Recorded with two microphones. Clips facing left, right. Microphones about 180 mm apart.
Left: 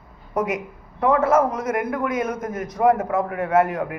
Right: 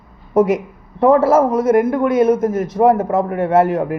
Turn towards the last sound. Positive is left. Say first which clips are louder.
# right 5 dB
turn(degrees=-30)  # may be behind; listen again after turning